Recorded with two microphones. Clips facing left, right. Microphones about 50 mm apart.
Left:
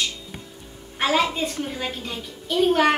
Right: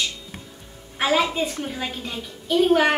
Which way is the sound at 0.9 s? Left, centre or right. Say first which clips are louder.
Right 1 dB; centre.